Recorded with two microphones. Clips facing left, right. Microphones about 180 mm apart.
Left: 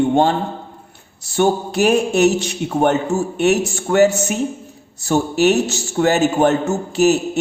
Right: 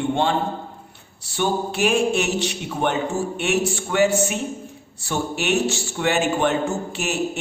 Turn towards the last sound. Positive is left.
turn(degrees=40)  # may be behind; listen again after turning